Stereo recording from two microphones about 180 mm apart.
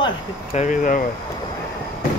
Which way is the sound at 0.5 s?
45° left (ahead or behind).